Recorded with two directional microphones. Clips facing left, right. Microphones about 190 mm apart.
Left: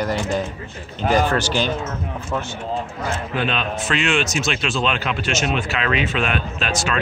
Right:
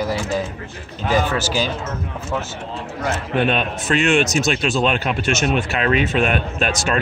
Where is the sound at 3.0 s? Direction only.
55° right (ahead or behind).